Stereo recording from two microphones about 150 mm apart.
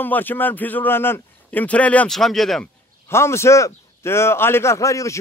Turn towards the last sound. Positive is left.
turn(degrees=20)  # may be behind; listen again after turning